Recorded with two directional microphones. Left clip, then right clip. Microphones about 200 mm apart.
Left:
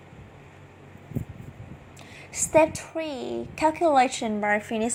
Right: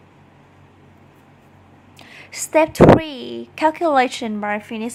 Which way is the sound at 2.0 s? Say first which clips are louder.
Right 2 dB; 25° right (ahead or behind).